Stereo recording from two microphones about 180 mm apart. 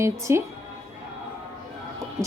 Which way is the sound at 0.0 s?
15° right (ahead or behind).